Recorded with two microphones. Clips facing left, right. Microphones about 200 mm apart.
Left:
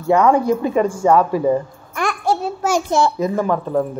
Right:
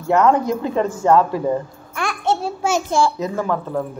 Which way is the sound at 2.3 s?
25° right (ahead or behind).